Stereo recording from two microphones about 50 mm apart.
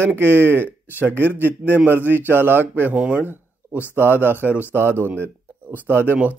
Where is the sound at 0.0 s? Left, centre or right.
Right.